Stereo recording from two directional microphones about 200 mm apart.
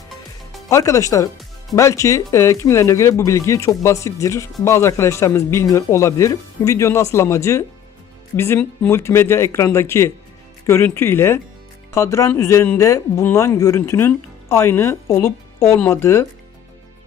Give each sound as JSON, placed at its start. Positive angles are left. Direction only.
{"t": 0.7, "sound": "speech", "side_deg": 15}